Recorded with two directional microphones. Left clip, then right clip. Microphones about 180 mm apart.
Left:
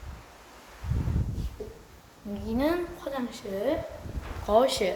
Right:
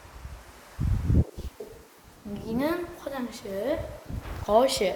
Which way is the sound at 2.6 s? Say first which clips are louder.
Left 1 dB; 5° right (ahead or behind).